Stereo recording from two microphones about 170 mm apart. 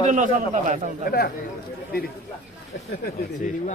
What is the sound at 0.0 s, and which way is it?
Speech, 45° right (ahead or behind).